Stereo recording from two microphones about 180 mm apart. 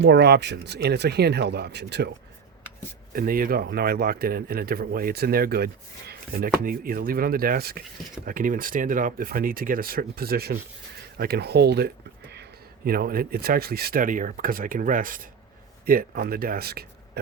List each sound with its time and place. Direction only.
0.0 s speech: 70° right (ahead or behind)
3.2 s speech: 55° right (ahead or behind)